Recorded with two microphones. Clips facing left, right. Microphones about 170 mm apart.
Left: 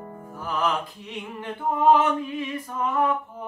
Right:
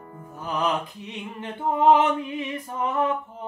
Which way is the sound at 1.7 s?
20° right (ahead or behind).